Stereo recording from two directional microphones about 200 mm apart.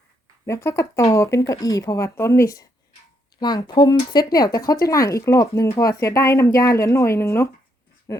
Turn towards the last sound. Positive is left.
turn(degrees=15)  # may be behind; listen again after turning